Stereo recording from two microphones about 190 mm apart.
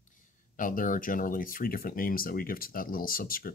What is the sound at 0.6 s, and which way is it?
Speech, 45° left (ahead or behind).